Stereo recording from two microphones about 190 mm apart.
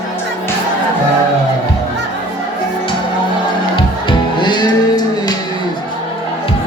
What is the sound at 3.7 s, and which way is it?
Music, 25° left (ahead or behind).